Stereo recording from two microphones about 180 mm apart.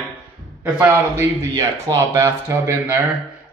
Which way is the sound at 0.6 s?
10° right (ahead or behind).